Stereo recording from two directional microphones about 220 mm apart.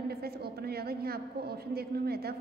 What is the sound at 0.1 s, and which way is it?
A woman's voice, 45° right (ahead or behind).